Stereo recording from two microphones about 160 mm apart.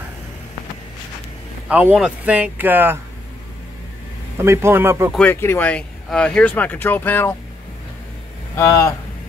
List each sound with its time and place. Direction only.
1.7 s speech: 10° right (ahead or behind)
4.4 s speech: 15° right (ahead or behind)
5.1 s speech: 10° left (ahead or behind)
8.5 s speech: 20° left (ahead or behind)